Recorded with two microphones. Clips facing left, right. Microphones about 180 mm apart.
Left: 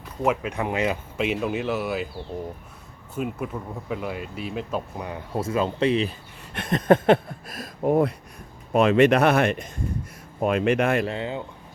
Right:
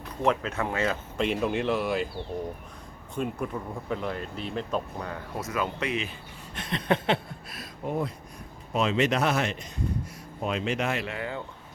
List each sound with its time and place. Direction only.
0.2 s speech: 10° left (ahead or behind)
3.2 s speech: 5° left (ahead or behind)
5.3 s speech: 30° left (ahead or behind)
6.5 s speech: 55° left (ahead or behind)
11.0 s speech: 25° left (ahead or behind)